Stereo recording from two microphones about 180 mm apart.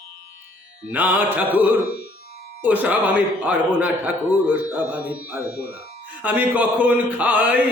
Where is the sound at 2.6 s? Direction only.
10° right (ahead or behind).